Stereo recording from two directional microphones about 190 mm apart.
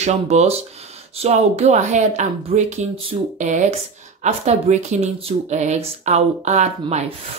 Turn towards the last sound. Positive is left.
turn(degrees=-35)  # may be behind; listen again after turning